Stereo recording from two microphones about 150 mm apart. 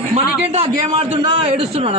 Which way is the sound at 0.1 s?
40° right (ahead or behind).